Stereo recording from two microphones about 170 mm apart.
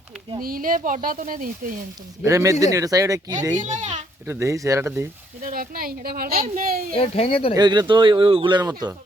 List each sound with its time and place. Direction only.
0.4 s speech: 55° right (ahead or behind)
2.2 s speech: 20° right (ahead or behind)
3.5 s a child's voice: 45° right (ahead or behind)
4.3 s speech: 15° right (ahead or behind)
5.4 s a woman's voice: 55° right (ahead or behind)
6.9 s speech: 35° left (ahead or behind)
7.5 s speech: 25° right (ahead or behind)